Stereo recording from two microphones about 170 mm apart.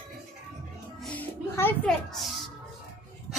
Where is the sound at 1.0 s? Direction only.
10° left (ahead or behind).